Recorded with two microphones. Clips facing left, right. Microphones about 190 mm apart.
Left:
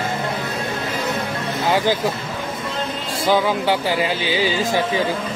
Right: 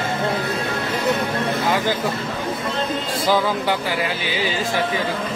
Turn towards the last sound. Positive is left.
turn(degrees=20)  # may be behind; listen again after turning